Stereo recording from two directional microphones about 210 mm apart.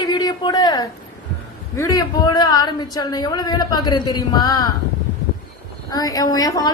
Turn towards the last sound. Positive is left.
turn(degrees=20)  # may be behind; listen again after turning